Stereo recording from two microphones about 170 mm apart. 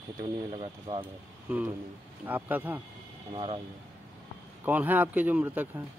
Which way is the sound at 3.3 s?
30° right (ahead or behind).